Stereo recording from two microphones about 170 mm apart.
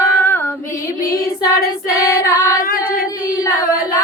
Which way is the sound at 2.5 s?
60° left (ahead or behind).